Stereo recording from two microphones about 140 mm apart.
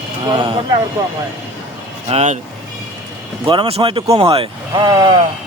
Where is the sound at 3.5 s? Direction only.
40° right (ahead or behind).